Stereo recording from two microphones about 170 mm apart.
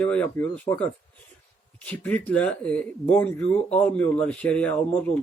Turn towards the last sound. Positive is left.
turn(degrees=10)  # may be behind; listen again after turning